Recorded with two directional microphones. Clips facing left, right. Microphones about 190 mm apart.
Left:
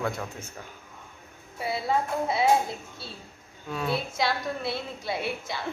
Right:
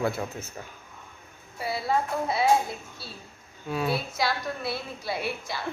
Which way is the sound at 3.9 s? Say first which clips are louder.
Left 1 dB; 25° left (ahead or behind).